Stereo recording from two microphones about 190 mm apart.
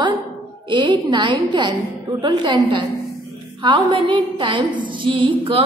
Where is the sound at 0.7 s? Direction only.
25° right (ahead or behind).